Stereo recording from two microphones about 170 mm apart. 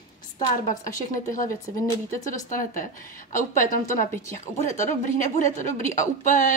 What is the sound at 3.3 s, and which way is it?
A woman's voice, 50° left (ahead or behind).